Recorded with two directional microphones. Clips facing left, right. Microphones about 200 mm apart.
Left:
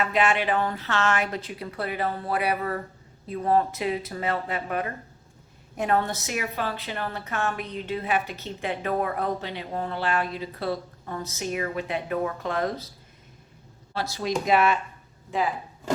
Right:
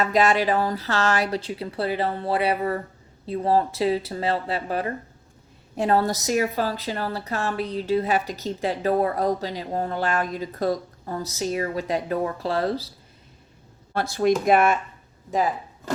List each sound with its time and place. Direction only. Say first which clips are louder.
0.0 s a woman's voice: right 4 dB; 40° right (ahead or behind)
13.9 s a woman's voice: right 7 dB; 55° right (ahead or behind)